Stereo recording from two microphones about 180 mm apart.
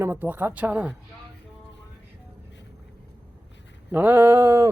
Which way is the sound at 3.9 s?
10° right (ahead or behind).